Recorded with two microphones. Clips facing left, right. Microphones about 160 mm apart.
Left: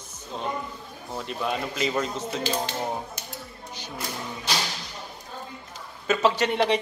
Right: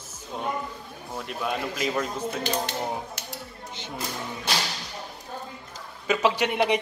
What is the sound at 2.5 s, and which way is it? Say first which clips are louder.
Speech: even; centre (ahead or behind).